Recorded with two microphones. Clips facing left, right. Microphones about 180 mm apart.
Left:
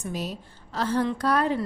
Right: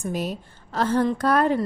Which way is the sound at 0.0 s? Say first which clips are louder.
Right 4 dB; 50° right (ahead or behind).